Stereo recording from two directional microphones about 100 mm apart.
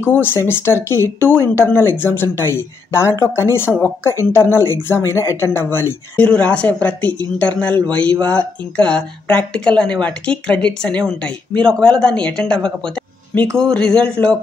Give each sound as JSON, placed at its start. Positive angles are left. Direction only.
{"t": 0.0, "sound": "speech", "side_deg": 20}
{"t": 6.2, "sound": "speech", "side_deg": 10}